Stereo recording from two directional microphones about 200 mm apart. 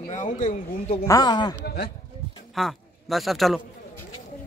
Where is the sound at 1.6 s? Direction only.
55° left (ahead or behind).